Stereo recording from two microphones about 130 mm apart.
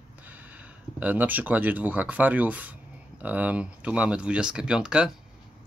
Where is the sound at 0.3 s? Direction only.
10° right (ahead or behind).